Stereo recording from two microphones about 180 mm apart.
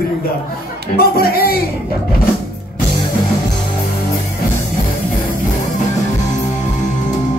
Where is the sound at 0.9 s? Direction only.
55° left (ahead or behind).